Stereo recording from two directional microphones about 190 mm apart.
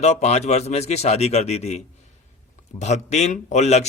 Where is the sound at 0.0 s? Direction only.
35° left (ahead or behind).